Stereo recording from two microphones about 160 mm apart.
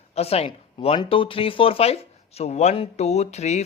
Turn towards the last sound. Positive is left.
turn(degrees=45)  # may be behind; listen again after turning